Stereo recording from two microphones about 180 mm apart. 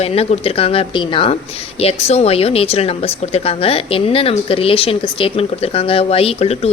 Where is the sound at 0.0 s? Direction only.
35° left (ahead or behind).